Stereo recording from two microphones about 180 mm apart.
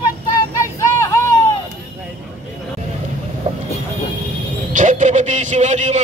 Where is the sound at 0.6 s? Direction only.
15° left (ahead or behind).